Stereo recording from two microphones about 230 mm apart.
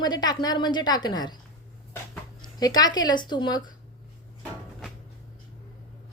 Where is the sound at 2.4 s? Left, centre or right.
Centre.